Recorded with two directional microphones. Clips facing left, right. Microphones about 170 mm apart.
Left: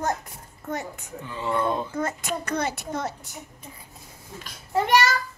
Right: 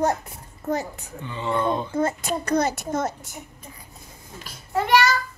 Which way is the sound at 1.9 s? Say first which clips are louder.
Right 4 dB; 30° right (ahead or behind).